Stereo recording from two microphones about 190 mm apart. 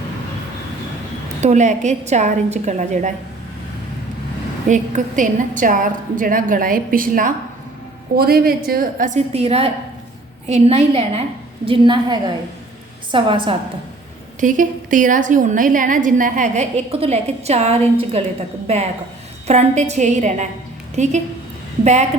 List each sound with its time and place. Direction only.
1.4 s a woman's voice: 40° right (ahead or behind)
4.7 s a woman's voice: 40° right (ahead or behind); by 13.6 s 25° right (ahead or behind)
14.4 s a woman's voice: 45° right (ahead or behind)
19.5 s a woman's voice: 35° right (ahead or behind)